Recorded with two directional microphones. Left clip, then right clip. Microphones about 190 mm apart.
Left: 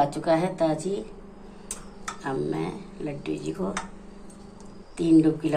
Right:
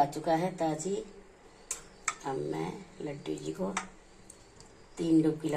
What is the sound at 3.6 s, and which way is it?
Speech, 25° left (ahead or behind).